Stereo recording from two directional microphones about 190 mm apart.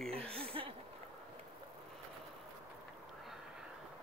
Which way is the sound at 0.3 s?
30° right (ahead or behind).